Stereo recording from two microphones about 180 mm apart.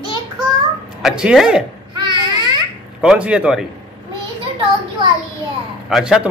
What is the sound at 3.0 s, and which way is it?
Speech, 5° right (ahead or behind).